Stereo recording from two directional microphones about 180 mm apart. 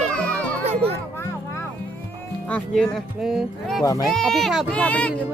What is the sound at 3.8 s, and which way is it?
Speech, 20° left (ahead or behind).